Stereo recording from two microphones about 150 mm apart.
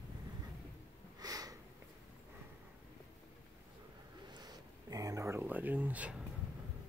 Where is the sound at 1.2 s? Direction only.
25° right (ahead or behind).